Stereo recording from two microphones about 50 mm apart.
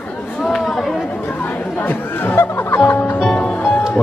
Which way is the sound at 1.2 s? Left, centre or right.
Left.